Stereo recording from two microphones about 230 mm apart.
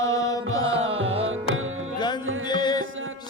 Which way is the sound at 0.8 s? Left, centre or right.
Right.